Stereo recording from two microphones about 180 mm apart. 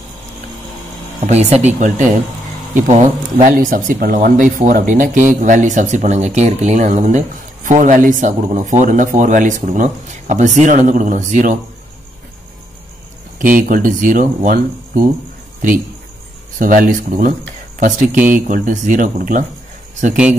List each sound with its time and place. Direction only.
1.2 s speech: 40° right (ahead or behind)
2.7 s speech: 40° right (ahead or behind)
13.6 s speech: 50° right (ahead or behind)
16.5 s speech: 50° right (ahead or behind)
18.1 s speech: 10° right (ahead or behind)
18.5 s speech: 45° right (ahead or behind)